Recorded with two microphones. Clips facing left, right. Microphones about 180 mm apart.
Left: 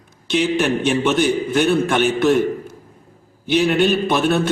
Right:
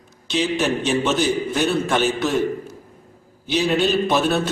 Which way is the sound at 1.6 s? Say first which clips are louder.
Left 4 dB; centre (ahead or behind).